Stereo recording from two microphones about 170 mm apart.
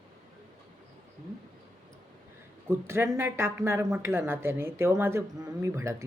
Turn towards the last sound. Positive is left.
turn(degrees=-15)  # may be behind; listen again after turning